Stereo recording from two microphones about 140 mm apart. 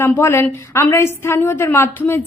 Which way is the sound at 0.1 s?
15° left (ahead or behind).